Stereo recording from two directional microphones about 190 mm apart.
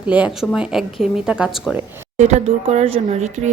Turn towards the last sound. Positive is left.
turn(degrees=-40)  # may be behind; listen again after turning